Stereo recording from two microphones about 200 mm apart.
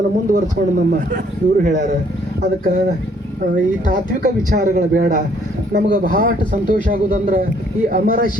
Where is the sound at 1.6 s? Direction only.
40° right (ahead or behind).